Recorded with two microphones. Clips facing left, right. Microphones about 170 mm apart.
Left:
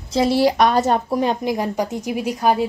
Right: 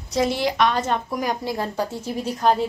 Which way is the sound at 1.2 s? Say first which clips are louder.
Left 5 dB; 20° left (ahead or behind).